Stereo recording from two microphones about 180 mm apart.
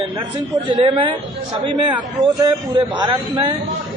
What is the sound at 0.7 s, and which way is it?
A man's voice, 30° right (ahead or behind).